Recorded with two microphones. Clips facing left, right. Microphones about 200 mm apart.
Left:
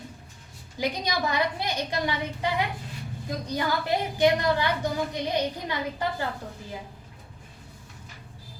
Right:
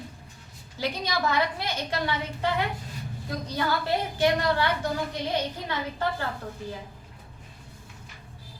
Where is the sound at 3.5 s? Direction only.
15° left (ahead or behind).